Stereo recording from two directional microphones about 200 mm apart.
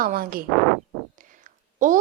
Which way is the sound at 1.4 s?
40° right (ahead or behind).